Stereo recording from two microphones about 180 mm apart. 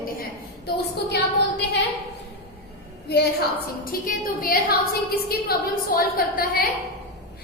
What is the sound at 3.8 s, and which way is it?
A woman's voice, 50° left (ahead or behind).